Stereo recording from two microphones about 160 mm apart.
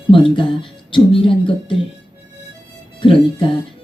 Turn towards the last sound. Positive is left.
turn(degrees=35)  # may be behind; listen again after turning